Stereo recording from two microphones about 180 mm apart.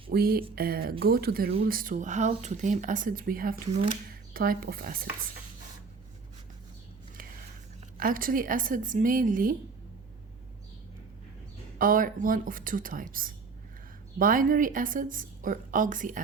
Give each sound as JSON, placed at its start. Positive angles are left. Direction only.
{"t": 0.1, "sound": "a woman's voice", "side_deg": -55}
{"t": 7.9, "sound": "a woman's voice", "side_deg": -50}
{"t": 11.8, "sound": "a woman's voice", "side_deg": -50}